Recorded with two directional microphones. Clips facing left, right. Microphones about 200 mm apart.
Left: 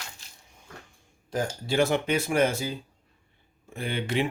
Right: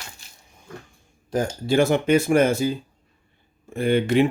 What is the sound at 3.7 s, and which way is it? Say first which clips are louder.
Speech: right 10 dB; 50° right (ahead or behind).